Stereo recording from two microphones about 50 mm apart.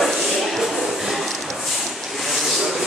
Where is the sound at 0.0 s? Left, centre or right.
Centre.